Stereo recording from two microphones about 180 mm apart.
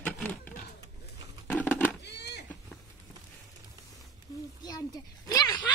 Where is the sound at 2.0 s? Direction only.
70° left (ahead or behind).